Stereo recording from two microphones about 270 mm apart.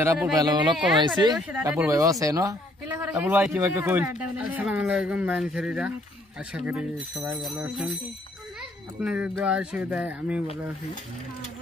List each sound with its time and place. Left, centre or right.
0.0 s a woman's voice: centre
9.0 s speech: centre